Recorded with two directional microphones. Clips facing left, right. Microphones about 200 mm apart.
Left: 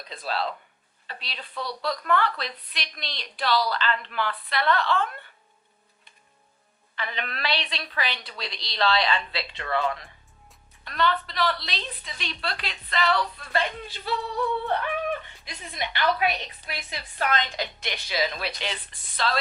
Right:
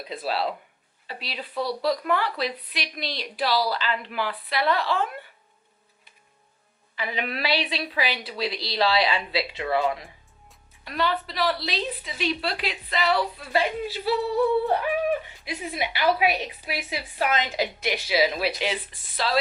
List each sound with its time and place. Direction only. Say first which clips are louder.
0.0 s speech: right 3 dB; 5° right (ahead or behind)
6.9 s speech: right 4 dB; 5° right (ahead or behind)